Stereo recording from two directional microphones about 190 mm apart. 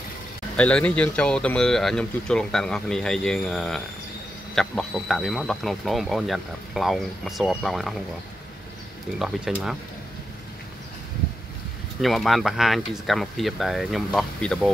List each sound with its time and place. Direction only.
0.6 s speech: 5° left (ahead or behind)
9.2 s speech: 5° right (ahead or behind)
12.0 s speech: centre (ahead or behind)